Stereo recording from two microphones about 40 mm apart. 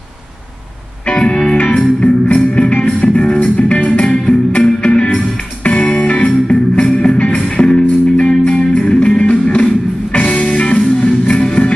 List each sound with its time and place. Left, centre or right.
1.0 s music: left
1.8 s music: left
4.0 s music: left